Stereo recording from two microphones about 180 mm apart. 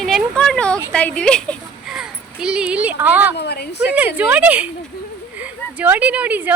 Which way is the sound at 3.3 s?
65° left (ahead or behind).